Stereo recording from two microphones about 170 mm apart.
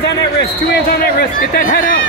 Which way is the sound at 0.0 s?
65° left (ahead or behind).